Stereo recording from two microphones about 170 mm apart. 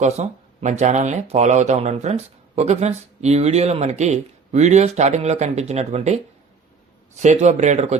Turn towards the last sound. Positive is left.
turn(degrees=-45)  # may be behind; listen again after turning